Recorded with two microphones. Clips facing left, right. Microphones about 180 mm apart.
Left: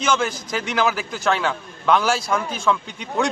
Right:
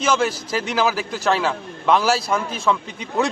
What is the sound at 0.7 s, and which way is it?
A man's voice, centre (ahead or behind).